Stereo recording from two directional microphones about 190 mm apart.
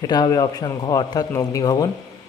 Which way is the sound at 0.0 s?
20° left (ahead or behind).